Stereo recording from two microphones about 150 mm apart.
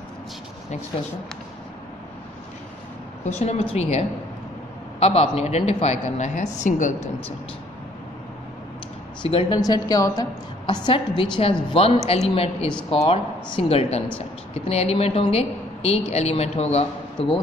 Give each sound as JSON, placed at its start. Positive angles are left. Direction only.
{"t": 3.3, "sound": "a woman's voice", "side_deg": 45}
{"t": 5.0, "sound": "a woman's voice", "side_deg": 40}
{"t": 9.2, "sound": "a woman's voice", "side_deg": 35}
{"t": 9.6, "sound": "a woman's voice", "side_deg": 25}
{"t": 10.7, "sound": "a woman's voice", "side_deg": 30}